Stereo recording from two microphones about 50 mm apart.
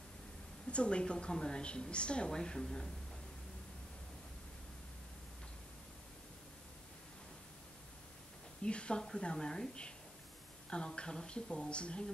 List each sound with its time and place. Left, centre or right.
0.7 s a woman's voice: left
8.6 s a woman's voice: left